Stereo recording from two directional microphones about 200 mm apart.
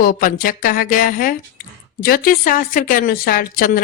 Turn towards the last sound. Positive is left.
turn(degrees=45)  # may be behind; listen again after turning